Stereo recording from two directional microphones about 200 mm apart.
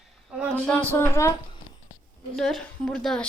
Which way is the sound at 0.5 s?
5° left (ahead or behind).